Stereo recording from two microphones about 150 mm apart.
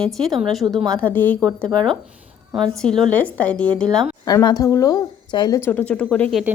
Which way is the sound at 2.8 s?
5° left (ahead or behind).